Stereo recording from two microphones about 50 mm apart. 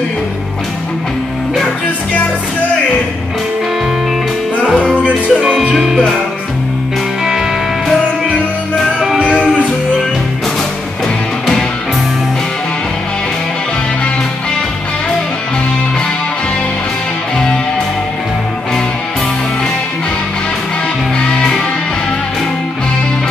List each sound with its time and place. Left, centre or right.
4.9 s music: right
5.7 s music: centre